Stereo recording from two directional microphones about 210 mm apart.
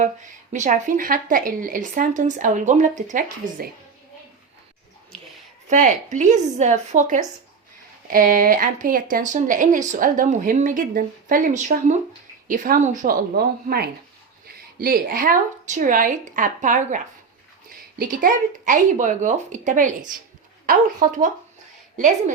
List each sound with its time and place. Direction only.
0.0 s speech: 35° right (ahead or behind)
5.6 s a woman's voice: 35° right (ahead or behind)